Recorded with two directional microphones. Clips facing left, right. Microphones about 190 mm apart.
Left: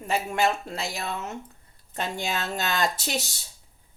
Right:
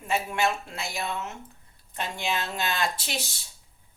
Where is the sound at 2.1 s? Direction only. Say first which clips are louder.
Right 1 dB; 40° left (ahead or behind).